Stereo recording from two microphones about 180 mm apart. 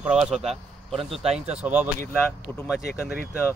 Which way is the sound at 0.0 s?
5° right (ahead or behind).